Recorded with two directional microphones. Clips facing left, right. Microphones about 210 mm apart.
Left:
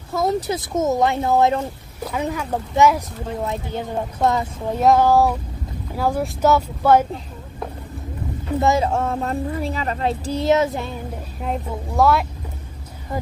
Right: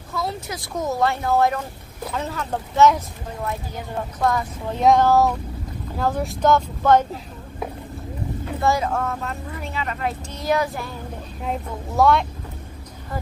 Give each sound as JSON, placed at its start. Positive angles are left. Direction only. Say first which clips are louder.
{"t": 0.1, "sound": "speech", "louder": "left 7 dB", "side_deg": 45}
{"t": 0.5, "sound": "speech", "louder": "left 6 dB", "side_deg": 20}
{"t": 2.1, "sound": "speech", "louder": "left 3 dB", "side_deg": 10}
{"t": 3.4, "sound": "speech", "louder": "even", "side_deg": 25}
{"t": 4.7, "sound": "speech", "louder": "left 1 dB", "side_deg": 5}
{"t": 8.5, "sound": "speech", "louder": "left 3 dB", "side_deg": 25}
{"t": 12.0, "sound": "speech", "louder": "even", "side_deg": 5}